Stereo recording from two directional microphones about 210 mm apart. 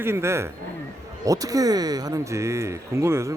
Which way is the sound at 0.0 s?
10° right (ahead or behind).